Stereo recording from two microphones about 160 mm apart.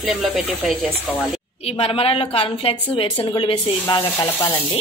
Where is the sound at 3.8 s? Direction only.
15° left (ahead or behind).